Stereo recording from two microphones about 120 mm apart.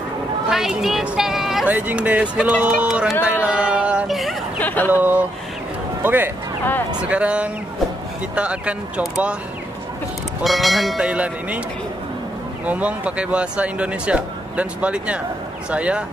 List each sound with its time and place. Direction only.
0.5 s a woman's voice: 5° right (ahead or behind)
1.7 s speech: 15° right (ahead or behind)
4.6 s speech: 15° left (ahead or behind)
6.0 s speech: 15° right (ahead or behind)
10.4 s speech: centre (ahead or behind)
12.6 s speech: 10° right (ahead or behind)